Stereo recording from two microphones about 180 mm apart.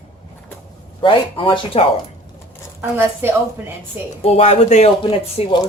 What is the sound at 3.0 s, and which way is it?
Speech, 15° right (ahead or behind).